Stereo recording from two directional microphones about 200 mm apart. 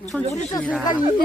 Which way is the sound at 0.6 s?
20° left (ahead or behind).